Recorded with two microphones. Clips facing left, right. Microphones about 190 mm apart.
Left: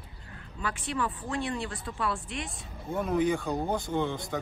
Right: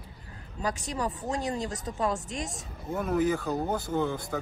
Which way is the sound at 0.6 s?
40° right (ahead or behind).